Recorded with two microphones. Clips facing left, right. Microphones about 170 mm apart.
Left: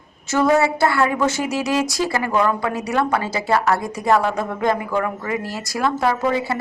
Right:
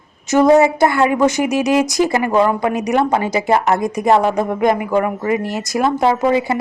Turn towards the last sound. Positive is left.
turn(degrees=-15)  # may be behind; listen again after turning